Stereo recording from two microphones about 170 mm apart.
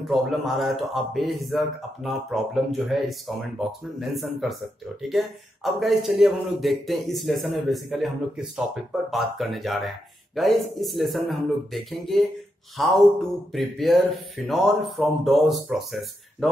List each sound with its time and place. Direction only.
0.0 s a man's voice: centre (ahead or behind)